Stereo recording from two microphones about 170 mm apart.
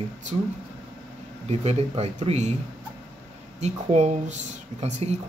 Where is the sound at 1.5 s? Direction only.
40° right (ahead or behind).